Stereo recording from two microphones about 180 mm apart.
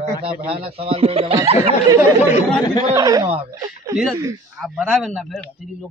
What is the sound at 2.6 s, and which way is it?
Speech, 25° left (ahead or behind).